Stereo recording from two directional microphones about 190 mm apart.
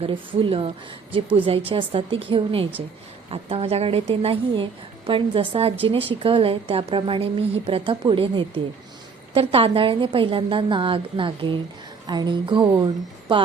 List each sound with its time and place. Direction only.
0.0 s a woman's voice: 30° right (ahead or behind)